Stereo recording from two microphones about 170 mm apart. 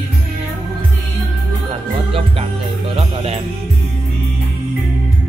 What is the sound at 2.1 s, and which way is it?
Music, 30° right (ahead or behind).